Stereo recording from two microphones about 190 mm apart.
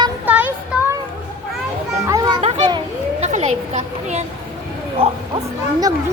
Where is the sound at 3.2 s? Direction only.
35° right (ahead or behind).